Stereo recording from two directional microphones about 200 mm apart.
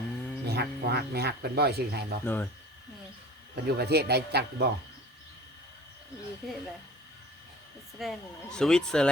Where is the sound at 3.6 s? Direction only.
55° right (ahead or behind).